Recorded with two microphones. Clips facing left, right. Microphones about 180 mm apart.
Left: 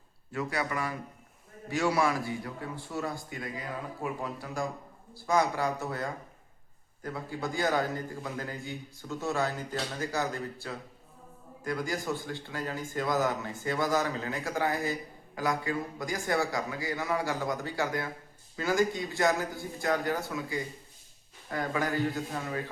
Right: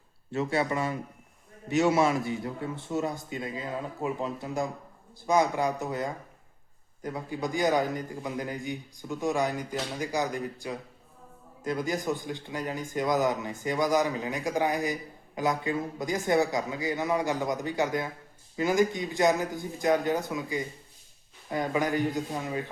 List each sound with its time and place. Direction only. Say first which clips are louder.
0.3 s a man's voice: right 5 dB; 25° right (ahead or behind)